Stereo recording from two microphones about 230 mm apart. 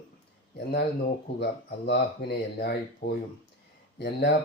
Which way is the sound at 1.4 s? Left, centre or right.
Left.